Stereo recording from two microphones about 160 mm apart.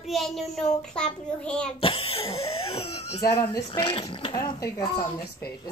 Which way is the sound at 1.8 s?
35° left (ahead or behind).